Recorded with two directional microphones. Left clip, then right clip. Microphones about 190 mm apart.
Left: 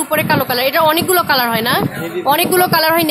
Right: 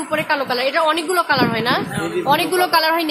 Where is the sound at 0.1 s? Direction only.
40° left (ahead or behind).